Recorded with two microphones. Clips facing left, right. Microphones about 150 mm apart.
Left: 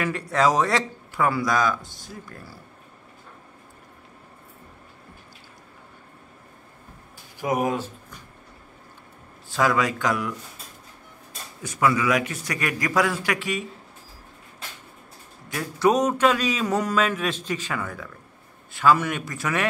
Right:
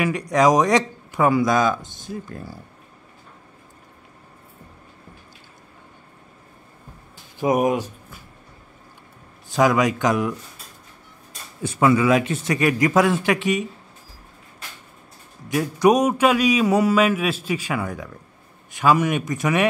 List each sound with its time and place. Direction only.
0.0 s speech: 15° right (ahead or behind)
7.3 s speech: 20° right (ahead or behind)
9.5 s speech: 20° right (ahead or behind)
11.6 s speech: 25° right (ahead or behind)
15.4 s speech: 15° right (ahead or behind)